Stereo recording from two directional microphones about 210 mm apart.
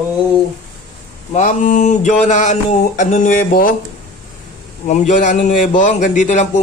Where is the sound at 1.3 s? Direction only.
35° left (ahead or behind).